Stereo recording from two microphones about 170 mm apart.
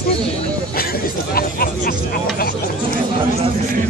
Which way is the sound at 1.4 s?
60° left (ahead or behind).